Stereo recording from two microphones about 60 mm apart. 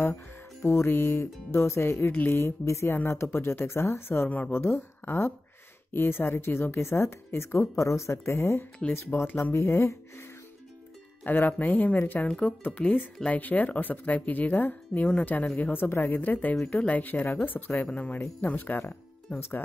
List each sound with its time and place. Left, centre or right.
0.6 s a woman's voice: left
9.6 s speech: left
11.2 s a woman's voice: left
12.3 s a woman's voice: centre
13.2 s a woman's voice: left